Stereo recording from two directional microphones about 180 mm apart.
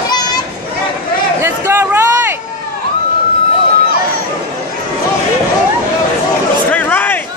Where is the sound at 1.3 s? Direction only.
15° right (ahead or behind).